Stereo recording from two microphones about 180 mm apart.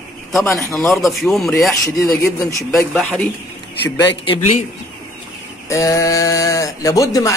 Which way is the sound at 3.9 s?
30° left (ahead or behind).